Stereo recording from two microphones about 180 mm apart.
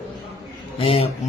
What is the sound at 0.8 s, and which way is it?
Speech, 35° left (ahead or behind).